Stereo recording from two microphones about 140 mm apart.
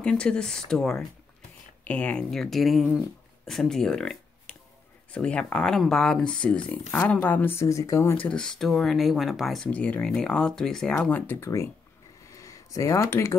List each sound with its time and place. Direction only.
0.0 s speech: 5° left (ahead or behind)
9.7 s speech: 10° left (ahead or behind)
12.3 s a sound: 25° left (ahead or behind)